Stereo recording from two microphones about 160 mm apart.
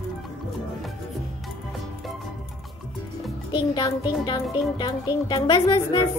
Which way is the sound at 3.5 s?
25° left (ahead or behind).